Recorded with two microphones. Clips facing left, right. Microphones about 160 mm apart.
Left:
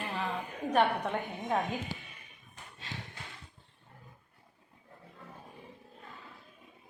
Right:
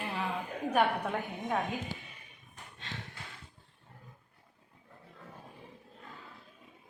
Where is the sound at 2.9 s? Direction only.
10° left (ahead or behind).